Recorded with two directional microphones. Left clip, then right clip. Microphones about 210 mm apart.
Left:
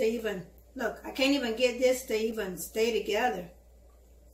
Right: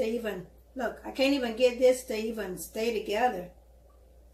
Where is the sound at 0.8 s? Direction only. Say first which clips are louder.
Right 1 dB; 5° right (ahead or behind).